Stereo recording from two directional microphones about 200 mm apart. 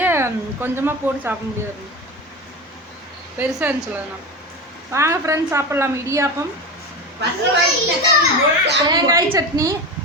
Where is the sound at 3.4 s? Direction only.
10° right (ahead or behind).